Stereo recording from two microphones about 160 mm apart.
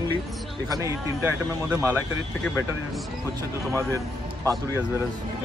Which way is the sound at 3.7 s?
20° right (ahead or behind).